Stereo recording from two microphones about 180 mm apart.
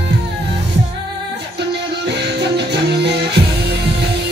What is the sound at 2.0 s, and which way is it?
Music, 70° right (ahead or behind).